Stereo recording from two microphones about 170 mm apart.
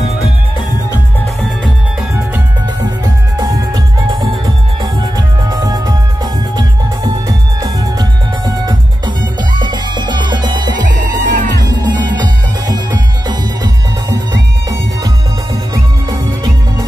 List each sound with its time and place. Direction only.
3.3 s music: 25° right (ahead or behind)
5.5 s music: 20° right (ahead or behind)
7.1 s music: 25° right (ahead or behind)
11.2 s music: 50° right (ahead or behind)
12.2 s music: 25° right (ahead or behind)
15.7 s music: 20° right (ahead or behind)